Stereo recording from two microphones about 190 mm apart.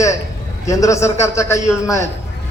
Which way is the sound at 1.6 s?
5° right (ahead or behind).